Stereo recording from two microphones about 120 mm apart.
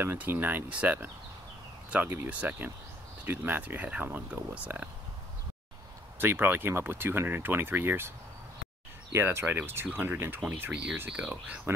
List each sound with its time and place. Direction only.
0.0 s speech: 20° right (ahead or behind)
6.1 s speech: 20° right (ahead or behind)
9.1 s speech: 20° right (ahead or behind)